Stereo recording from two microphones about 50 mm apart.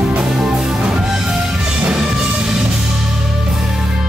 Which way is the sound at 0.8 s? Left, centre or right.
Centre.